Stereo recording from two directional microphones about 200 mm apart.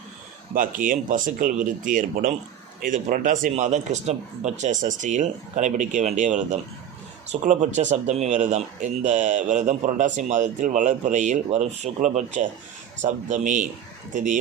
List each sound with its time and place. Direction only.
0.5 s speech: 45° right (ahead or behind)